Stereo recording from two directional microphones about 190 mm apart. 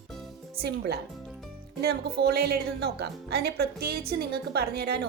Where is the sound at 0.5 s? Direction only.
55° right (ahead or behind).